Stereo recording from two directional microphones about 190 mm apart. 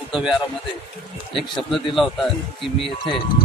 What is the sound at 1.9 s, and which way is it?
Speech, centre (ahead or behind).